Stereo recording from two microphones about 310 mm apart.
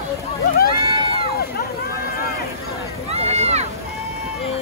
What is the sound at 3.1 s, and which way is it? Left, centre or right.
Speech, centre.